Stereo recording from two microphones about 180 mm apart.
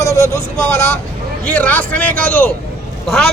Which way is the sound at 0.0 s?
15° left (ahead or behind).